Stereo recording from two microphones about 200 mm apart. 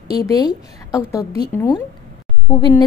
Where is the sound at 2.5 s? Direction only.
20° left (ahead or behind).